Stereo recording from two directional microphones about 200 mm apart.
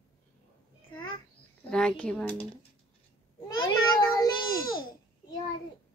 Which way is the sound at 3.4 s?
20° left (ahead or behind).